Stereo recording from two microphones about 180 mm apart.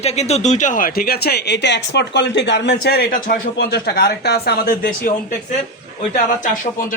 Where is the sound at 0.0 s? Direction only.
35° left (ahead or behind); by 5.1 s 55° left (ahead or behind).